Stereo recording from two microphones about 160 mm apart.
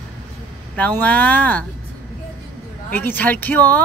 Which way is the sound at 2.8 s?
10° left (ahead or behind).